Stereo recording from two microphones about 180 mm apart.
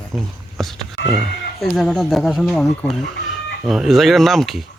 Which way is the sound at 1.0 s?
75° left (ahead or behind).